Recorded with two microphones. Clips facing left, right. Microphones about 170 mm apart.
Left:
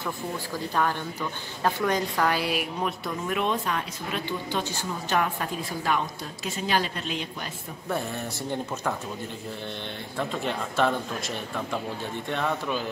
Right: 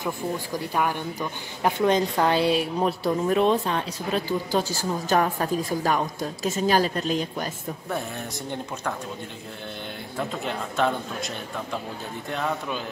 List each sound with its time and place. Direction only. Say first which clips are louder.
0.0 s speech: right 4 dB; 15° right (ahead or behind); by 7.4 s 40° right (ahead or behind)
10.1 s speech: even; centre (ahead or behind)